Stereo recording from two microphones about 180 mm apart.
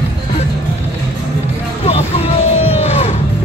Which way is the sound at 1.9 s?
35° left (ahead or behind).